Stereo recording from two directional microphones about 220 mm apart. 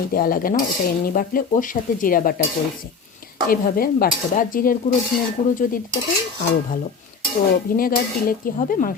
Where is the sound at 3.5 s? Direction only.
40° left (ahead or behind).